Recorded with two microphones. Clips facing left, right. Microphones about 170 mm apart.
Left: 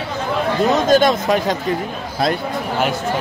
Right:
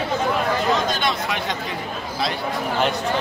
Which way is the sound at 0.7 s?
45° left (ahead or behind).